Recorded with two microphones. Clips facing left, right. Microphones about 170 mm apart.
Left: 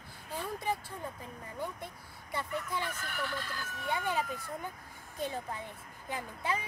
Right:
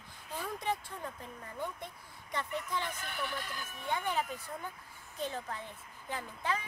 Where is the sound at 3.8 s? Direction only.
10° left (ahead or behind).